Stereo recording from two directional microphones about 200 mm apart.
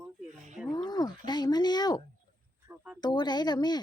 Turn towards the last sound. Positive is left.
turn(degrees=20)  # may be behind; listen again after turning